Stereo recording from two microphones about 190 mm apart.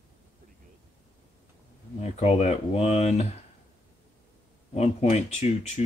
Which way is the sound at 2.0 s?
35° left (ahead or behind).